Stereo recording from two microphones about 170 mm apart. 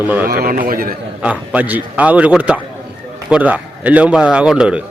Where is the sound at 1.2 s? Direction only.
10° right (ahead or behind).